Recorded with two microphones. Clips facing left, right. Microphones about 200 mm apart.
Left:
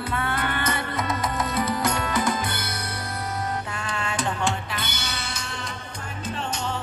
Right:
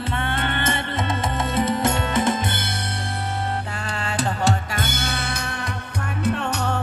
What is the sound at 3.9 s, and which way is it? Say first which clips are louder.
Music: right 2 dB; 35° right (ahead or behind).